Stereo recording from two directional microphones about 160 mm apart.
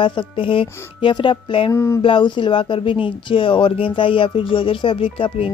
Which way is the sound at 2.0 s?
30° left (ahead or behind).